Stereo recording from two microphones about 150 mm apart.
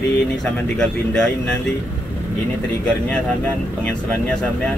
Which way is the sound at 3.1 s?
5° left (ahead or behind).